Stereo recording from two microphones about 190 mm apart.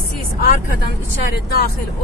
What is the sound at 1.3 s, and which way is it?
Speech, 55° left (ahead or behind).